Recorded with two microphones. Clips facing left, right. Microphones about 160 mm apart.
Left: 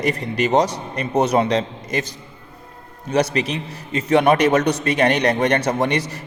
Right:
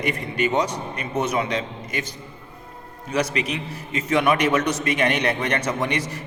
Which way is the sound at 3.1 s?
35° left (ahead or behind).